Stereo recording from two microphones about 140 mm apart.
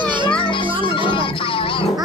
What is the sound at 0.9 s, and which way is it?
Music, 35° left (ahead or behind).